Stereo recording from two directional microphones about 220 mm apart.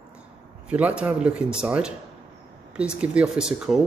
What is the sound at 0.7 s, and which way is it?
A man's voice, 5° right (ahead or behind).